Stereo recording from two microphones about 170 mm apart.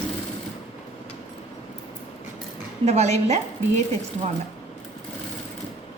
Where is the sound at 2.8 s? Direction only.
40° right (ahead or behind).